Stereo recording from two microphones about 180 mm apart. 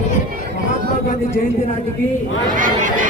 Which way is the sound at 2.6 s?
45° right (ahead or behind).